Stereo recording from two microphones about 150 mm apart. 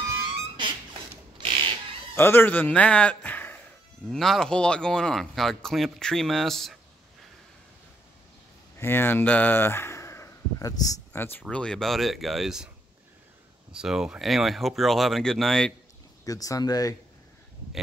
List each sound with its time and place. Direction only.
1.4 s cat: 35° right (ahead or behind)
2.1 s a man's voice: 15° left (ahead or behind)
8.7 s speech: 15° left (ahead or behind); by 12.6 s centre (ahead or behind)
13.7 s speech: 5° right (ahead or behind)
16.3 s speech: 25° left (ahead or behind)